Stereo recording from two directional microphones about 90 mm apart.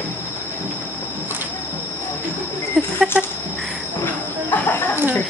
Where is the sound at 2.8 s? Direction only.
5° left (ahead or behind).